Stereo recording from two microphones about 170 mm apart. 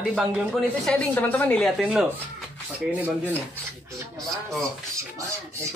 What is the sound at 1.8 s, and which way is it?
Speech, 5° right (ahead or behind).